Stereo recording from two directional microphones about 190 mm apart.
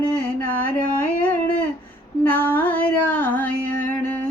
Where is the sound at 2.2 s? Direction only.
10° left (ahead or behind).